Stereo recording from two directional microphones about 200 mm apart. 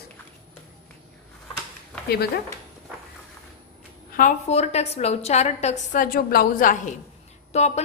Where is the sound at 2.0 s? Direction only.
55° left (ahead or behind).